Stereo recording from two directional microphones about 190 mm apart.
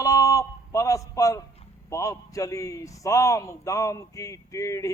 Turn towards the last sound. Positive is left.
turn(degrees=15)  # may be behind; listen again after turning